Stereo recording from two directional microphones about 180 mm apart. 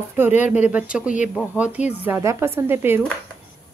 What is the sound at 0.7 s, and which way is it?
Speech, 5° right (ahead or behind).